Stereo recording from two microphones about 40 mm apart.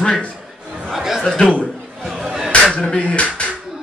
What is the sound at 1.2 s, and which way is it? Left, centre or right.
Speech, centre.